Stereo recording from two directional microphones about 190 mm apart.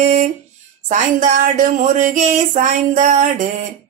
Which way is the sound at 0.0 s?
40° right (ahead or behind).